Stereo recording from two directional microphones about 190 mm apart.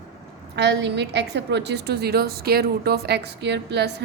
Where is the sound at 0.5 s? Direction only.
65° right (ahead or behind).